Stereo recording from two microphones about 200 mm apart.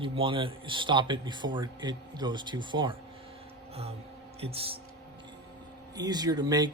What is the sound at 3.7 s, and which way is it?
Music, 30° right (ahead or behind).